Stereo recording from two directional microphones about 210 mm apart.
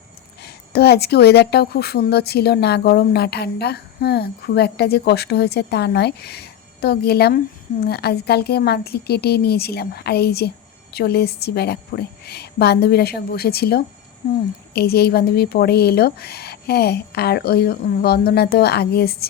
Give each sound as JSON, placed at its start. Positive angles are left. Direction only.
{"t": 0.4, "sound": "speech", "side_deg": 50}